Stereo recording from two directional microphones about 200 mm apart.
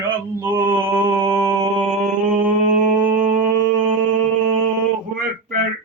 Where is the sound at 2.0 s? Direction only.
40° right (ahead or behind).